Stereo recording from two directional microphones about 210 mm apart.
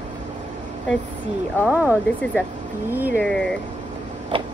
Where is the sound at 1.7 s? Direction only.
5° right (ahead or behind).